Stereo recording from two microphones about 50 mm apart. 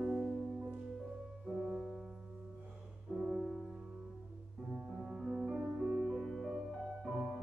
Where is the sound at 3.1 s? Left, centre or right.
Centre.